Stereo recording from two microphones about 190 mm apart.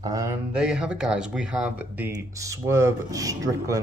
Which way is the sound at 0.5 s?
5° right (ahead or behind).